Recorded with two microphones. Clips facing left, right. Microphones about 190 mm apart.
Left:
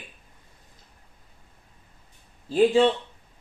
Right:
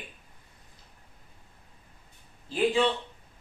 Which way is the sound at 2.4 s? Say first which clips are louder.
Left 7 dB; 40° left (ahead or behind).